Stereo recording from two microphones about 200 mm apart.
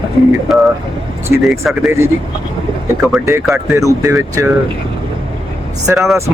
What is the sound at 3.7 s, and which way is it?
Speech, 15° right (ahead or behind).